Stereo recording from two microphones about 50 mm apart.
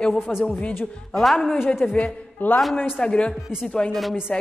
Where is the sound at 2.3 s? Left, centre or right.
Left.